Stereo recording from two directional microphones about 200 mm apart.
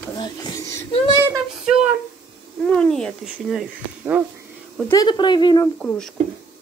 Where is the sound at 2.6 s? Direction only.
5° left (ahead or behind).